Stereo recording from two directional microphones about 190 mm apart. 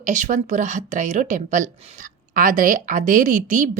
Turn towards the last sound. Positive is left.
turn(degrees=-40)  # may be behind; listen again after turning